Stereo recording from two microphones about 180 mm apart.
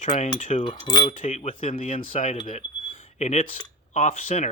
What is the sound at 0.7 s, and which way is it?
Cutlery, 25° left (ahead or behind).